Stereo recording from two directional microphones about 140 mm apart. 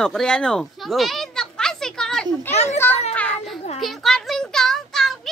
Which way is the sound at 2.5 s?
50° left (ahead or behind).